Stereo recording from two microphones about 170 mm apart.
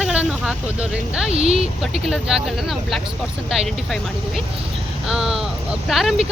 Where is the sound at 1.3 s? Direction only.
35° right (ahead or behind).